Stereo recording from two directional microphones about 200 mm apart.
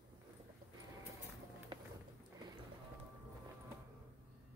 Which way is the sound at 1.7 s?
25° right (ahead or behind).